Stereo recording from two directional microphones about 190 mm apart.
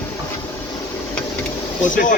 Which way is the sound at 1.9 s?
45° left (ahead or behind).